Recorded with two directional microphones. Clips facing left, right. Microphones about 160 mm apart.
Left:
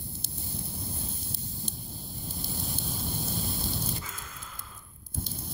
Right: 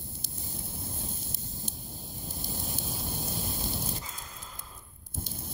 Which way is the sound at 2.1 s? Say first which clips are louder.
Left 1 dB; 20° right (ahead or behind).